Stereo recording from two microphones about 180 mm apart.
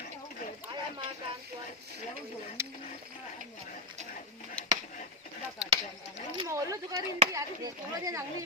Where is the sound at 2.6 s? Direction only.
15° right (ahead or behind).